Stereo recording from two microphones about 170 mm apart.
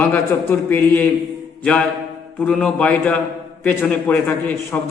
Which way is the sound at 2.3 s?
5° left (ahead or behind).